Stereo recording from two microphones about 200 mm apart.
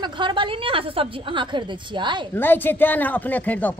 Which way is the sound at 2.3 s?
10° left (ahead or behind).